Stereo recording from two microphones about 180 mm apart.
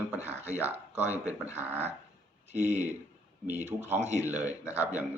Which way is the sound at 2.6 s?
10° right (ahead or behind).